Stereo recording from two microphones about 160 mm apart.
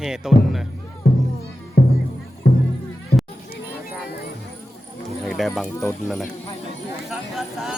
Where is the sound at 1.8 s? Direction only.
65° left (ahead or behind).